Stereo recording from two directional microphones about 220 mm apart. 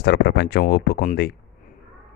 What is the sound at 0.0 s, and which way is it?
Speech, 45° left (ahead or behind).